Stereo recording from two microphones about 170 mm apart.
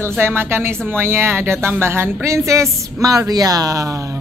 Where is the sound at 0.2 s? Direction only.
15° right (ahead or behind).